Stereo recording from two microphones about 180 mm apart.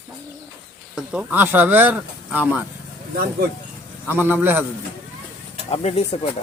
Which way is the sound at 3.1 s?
55° right (ahead or behind).